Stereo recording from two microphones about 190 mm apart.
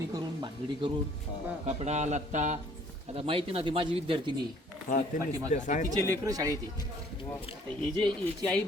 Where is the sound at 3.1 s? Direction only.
30° right (ahead or behind).